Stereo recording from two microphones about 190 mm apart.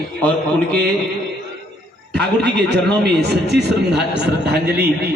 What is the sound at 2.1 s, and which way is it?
A man's voice, 65° right (ahead or behind).